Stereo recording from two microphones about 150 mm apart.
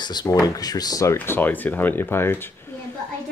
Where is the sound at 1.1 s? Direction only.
15° left (ahead or behind).